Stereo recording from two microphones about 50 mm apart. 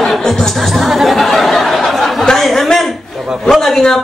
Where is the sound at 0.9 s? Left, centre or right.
Centre.